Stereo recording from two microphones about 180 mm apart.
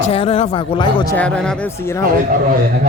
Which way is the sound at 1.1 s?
5° left (ahead or behind).